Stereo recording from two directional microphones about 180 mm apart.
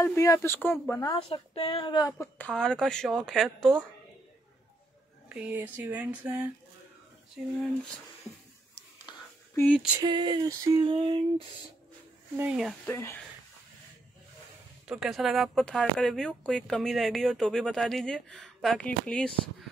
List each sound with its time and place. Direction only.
0.0 s a woman's voice: 15° left (ahead or behind)
1.1 s a woman's voice: 30° left (ahead or behind); by 3.7 s centre (ahead or behind)
5.3 s a sound: 10° right (ahead or behind)
9.8 s a sound: 10° right (ahead or behind)
10.0 s female singing: 25° right (ahead or behind)
12.4 s speech: 5° right (ahead or behind)
12.8 s a woman's voice: 15° left (ahead or behind)
14.9 s speech: centre (ahead or behind)